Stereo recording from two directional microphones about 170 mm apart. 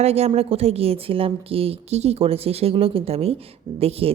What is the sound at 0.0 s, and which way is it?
A woman's voice, 40° right (ahead or behind).